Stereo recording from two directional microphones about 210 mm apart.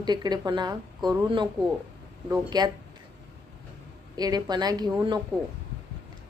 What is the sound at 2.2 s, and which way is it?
Speech, 15° right (ahead or behind).